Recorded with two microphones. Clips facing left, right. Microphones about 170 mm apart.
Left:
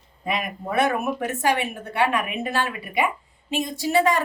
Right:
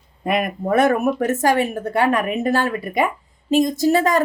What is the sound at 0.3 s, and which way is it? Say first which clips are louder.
A woman's voice: right 7 dB; 50° right (ahead or behind).